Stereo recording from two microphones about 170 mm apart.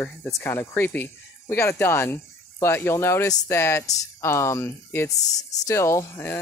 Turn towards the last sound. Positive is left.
turn(degrees=15)  # may be behind; listen again after turning